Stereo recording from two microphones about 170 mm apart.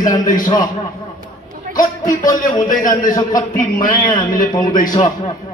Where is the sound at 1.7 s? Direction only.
50° left (ahead or behind).